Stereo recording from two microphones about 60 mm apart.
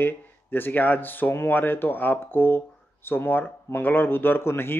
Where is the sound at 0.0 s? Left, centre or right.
Left.